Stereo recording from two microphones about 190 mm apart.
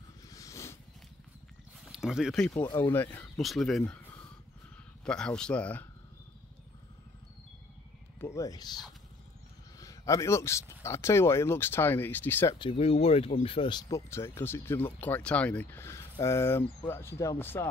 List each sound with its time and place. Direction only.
0.3 s a sound: 15° left (ahead or behind)
1.9 s speech: centre (ahead or behind)
2.5 s speech: 15° left (ahead or behind)
8.2 s speech: 15° left (ahead or behind)
9.8 s speech: 15° left (ahead or behind)
12.5 s speech: 30° left (ahead or behind); by 17.6 s 10° left (ahead or behind)